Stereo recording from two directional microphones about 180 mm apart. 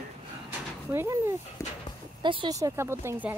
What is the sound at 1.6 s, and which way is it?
Horse, 15° left (ahead or behind).